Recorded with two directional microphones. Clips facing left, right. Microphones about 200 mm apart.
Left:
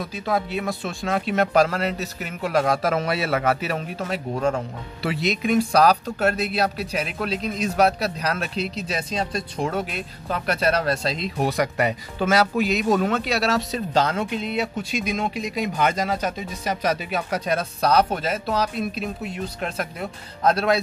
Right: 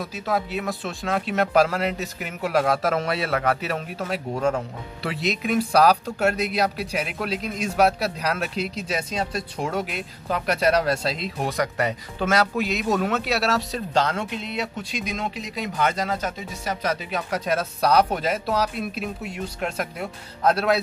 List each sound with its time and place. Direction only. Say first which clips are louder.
0.0 s speech: left 1 dB; 5° right (ahead or behind); by 17.2 s 15° left (ahead or behind)
17.3 s speech: right 1 dB; 5° right (ahead or behind)